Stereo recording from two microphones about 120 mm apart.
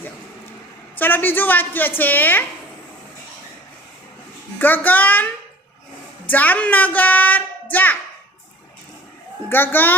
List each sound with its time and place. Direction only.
0.9 s a woman's voice: 15° left (ahead or behind)
4.5 s a woman's voice: 15° left (ahead or behind)
6.3 s a woman's voice: 15° left (ahead or behind)
9.5 s a woman's voice: 15° left (ahead or behind)